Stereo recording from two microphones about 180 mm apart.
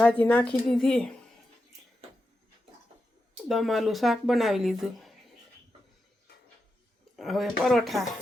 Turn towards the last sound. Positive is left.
turn(degrees=0)  # may be behind; listen again after turning